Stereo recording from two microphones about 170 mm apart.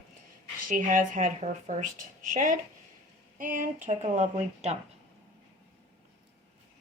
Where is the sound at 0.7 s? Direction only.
50° right (ahead or behind).